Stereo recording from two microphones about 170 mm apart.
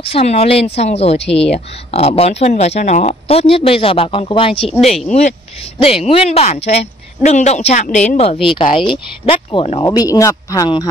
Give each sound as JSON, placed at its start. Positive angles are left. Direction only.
{"t": 0.0, "sound": "speech", "side_deg": 35}
{"t": 9.8, "sound": "speech", "side_deg": 20}